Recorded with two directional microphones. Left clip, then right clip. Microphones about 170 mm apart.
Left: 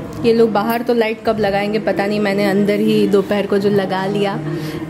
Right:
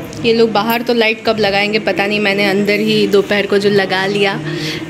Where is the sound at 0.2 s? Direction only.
15° left (ahead or behind).